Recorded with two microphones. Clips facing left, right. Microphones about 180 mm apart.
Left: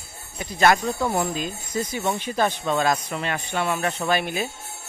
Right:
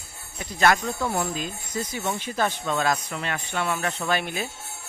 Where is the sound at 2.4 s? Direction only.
25° left (ahead or behind).